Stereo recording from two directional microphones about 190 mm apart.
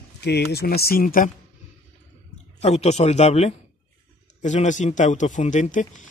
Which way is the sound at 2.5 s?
35° left (ahead or behind).